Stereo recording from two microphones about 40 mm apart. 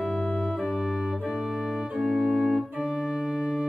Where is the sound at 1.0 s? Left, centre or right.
Centre.